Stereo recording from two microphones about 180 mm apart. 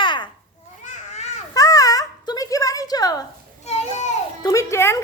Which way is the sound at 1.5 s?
20° left (ahead or behind).